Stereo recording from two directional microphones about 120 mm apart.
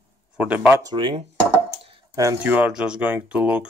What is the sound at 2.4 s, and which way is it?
Speech, 10° right (ahead or behind).